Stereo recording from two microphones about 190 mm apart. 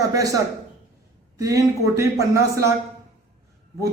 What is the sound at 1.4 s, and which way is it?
A man's voice, 15° right (ahead or behind).